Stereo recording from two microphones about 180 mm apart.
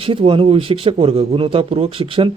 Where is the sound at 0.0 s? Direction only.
30° right (ahead or behind).